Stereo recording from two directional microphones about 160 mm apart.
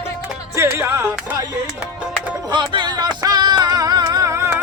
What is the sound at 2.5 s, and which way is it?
Music, 30° right (ahead or behind).